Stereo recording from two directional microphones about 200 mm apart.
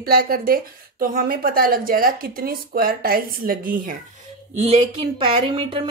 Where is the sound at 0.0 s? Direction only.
45° right (ahead or behind).